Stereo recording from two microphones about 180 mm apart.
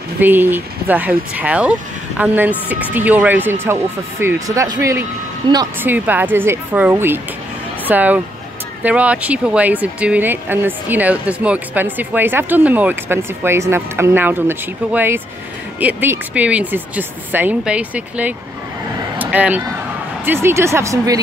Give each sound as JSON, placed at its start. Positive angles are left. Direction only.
{"t": 0.2, "sound": "speech", "side_deg": -10}
{"t": 5.8, "sound": "speech", "side_deg": -10}
{"t": 19.1, "sound": "vehicle", "side_deg": -10}
{"t": 20.4, "sound": "speech", "side_deg": -15}